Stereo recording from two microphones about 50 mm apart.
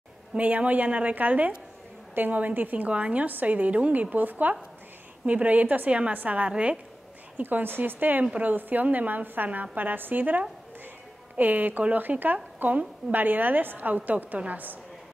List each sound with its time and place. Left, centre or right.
0.3 s a woman's voice: right
2.9 s a woman's voice: right
3.3 s a woman's voice: right
7.4 s a woman's voice: right